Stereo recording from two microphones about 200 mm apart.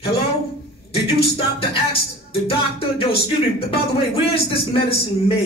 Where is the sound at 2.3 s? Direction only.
30° left (ahead or behind).